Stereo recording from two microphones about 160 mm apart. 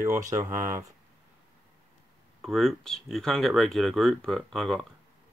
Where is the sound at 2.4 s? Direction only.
Centre (ahead or behind).